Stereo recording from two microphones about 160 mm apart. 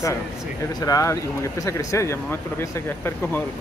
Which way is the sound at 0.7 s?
20° left (ahead or behind).